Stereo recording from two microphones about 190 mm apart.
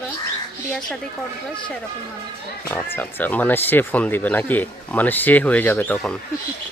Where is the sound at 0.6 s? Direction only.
5° left (ahead or behind).